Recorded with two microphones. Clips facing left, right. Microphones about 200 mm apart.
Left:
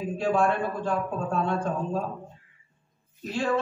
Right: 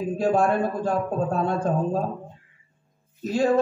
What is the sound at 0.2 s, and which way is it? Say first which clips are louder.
A man's voice: right 3 dB; 40° right (ahead or behind).